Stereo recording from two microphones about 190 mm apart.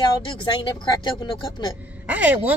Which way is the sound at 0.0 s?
25° left (ahead or behind).